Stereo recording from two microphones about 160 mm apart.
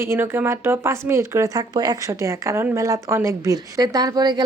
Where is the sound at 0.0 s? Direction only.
15° right (ahead or behind).